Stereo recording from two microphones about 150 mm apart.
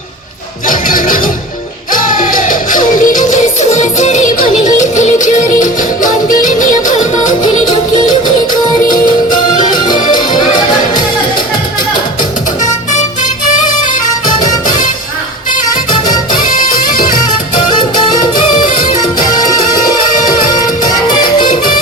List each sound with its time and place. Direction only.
0.7 s music: 65° left (ahead or behind)
12.9 s music: 55° left (ahead or behind)
16.5 s music: 65° left (ahead or behind)
21.1 s music: 30° left (ahead or behind)